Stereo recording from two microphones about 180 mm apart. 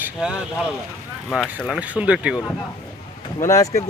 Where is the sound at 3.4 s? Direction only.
15° left (ahead or behind).